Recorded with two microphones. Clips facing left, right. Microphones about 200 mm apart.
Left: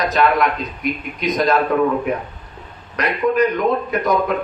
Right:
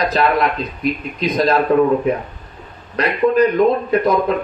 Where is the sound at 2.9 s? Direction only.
30° right (ahead or behind).